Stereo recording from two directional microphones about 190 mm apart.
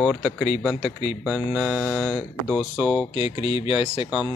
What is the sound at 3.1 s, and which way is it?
Speech, 30° left (ahead or behind).